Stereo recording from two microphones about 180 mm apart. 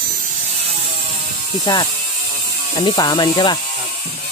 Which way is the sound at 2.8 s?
20° left (ahead or behind).